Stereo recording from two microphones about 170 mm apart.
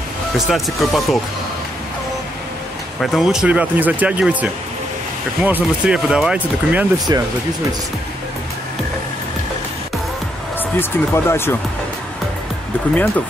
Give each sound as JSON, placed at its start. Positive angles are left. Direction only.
{"t": 0.5, "sound": "speech", "side_deg": 0}
{"t": 3.0, "sound": "speech", "side_deg": 0}
{"t": 7.1, "sound": "speech", "side_deg": -20}
{"t": 10.8, "sound": "speech", "side_deg": 15}